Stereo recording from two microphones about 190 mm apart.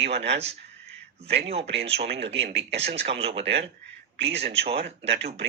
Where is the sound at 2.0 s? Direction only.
65° right (ahead or behind).